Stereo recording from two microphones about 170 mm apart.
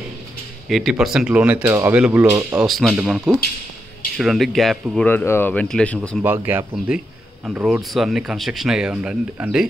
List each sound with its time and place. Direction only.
0.7 s speech: centre (ahead or behind); by 2.6 s 20° right (ahead or behind)
2.6 s speech: centre (ahead or behind)
4.2 s speech: centre (ahead or behind)
6.2 s speech: 10° right (ahead or behind)